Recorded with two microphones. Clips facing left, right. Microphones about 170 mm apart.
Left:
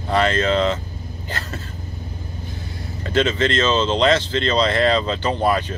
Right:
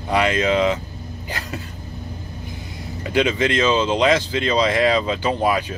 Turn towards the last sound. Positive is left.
turn(degrees=-10)  # may be behind; listen again after turning